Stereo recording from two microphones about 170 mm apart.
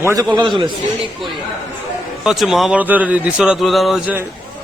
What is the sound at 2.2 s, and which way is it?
A man's voice, centre (ahead or behind).